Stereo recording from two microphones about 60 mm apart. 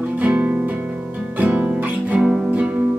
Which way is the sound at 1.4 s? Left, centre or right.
Right.